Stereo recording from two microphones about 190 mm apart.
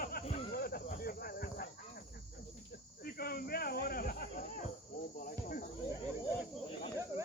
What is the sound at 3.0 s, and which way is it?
Speech, 55° left (ahead or behind).